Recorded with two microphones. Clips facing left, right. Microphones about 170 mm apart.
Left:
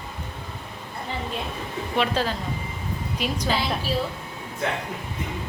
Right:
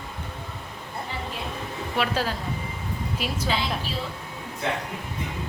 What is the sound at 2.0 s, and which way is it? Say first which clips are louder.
A woman's voice: left 2 dB; 10° right (ahead or behind).